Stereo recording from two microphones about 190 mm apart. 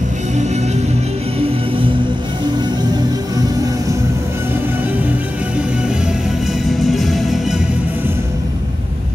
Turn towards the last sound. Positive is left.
turn(degrees=0)  # may be behind; listen again after turning